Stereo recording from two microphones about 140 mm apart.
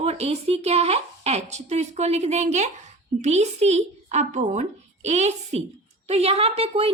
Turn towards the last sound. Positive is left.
turn(degrees=-45)  # may be behind; listen again after turning